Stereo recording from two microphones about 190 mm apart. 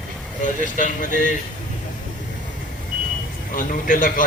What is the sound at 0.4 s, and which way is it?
Speech, 45° left (ahead or behind).